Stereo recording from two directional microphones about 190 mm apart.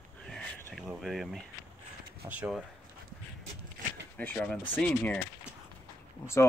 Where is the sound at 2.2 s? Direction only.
5° right (ahead or behind).